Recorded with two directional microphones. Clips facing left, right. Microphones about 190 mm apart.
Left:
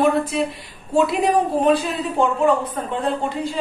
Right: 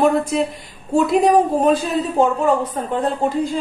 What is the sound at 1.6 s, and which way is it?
A man's voice, 40° right (ahead or behind).